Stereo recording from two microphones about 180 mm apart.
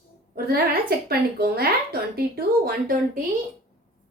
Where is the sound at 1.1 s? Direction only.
60° right (ahead or behind).